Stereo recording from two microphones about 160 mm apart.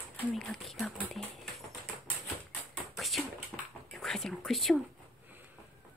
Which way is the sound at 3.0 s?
Centre (ahead or behind).